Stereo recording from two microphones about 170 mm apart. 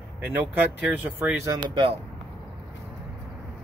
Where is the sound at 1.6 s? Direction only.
30° right (ahead or behind).